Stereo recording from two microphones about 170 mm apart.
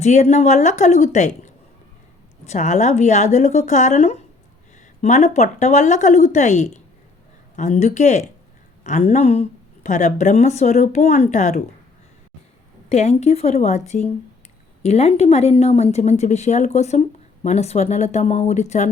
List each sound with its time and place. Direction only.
0.0 s a woman's voice: 45° left (ahead or behind)
2.5 s a woman's voice: 45° left (ahead or behind)
12.9 s a woman's voice: 40° left (ahead or behind)